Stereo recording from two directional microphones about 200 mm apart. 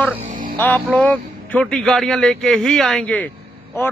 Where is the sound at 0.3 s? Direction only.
45° right (ahead or behind).